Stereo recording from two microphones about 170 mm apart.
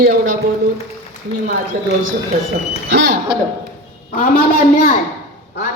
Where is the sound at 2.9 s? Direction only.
60° right (ahead or behind).